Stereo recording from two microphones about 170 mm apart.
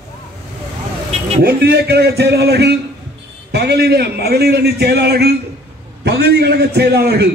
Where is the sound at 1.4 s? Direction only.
65° right (ahead or behind).